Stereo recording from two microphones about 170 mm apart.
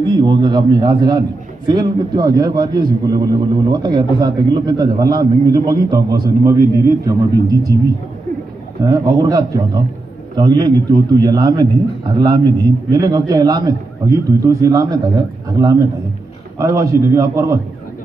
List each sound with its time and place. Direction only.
0.0 s a man's voice: 25° right (ahead or behind)
8.8 s a man's voice: 20° right (ahead or behind)